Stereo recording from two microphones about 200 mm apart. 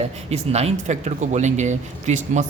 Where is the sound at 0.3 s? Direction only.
30° right (ahead or behind).